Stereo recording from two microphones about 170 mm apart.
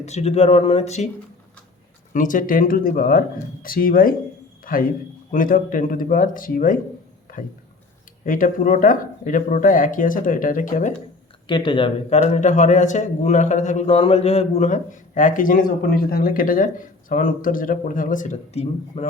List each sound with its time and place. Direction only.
0.0 s speech: 40° left (ahead or behind)
2.1 s a man's voice: 50° left (ahead or behind)
8.2 s a man's voice: 50° left (ahead or behind)
11.4 s speech: 30° left (ahead or behind)
12.1 s a man's voice: 40° left (ahead or behind)